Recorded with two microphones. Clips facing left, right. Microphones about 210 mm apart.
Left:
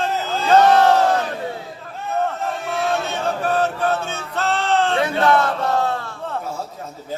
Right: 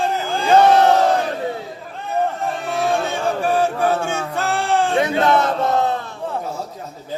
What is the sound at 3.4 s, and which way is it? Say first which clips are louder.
Chant: right 2 dB; 10° right (ahead or behind).